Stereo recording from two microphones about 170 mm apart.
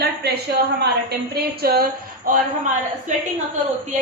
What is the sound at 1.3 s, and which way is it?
Speech, 65° right (ahead or behind).